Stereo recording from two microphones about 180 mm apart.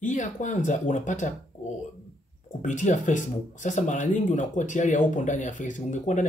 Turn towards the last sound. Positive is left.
turn(degrees=45)  # may be behind; listen again after turning